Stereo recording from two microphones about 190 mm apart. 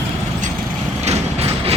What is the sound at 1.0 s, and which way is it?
Train, 35° right (ahead or behind).